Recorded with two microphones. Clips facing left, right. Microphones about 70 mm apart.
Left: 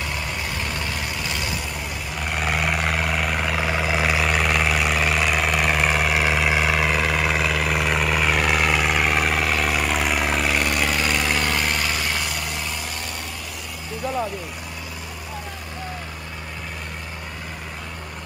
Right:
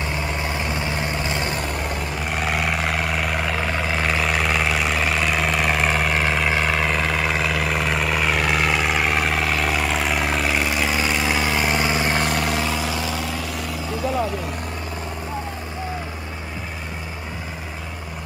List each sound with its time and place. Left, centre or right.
0.4 s vehicle: right
0.9 s vehicle: right
2.1 s vehicle: centre
12.0 s vehicle: right
12.3 s vehicle: right